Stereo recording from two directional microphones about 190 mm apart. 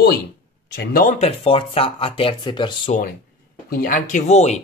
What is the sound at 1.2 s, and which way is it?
Speech, 30° left (ahead or behind).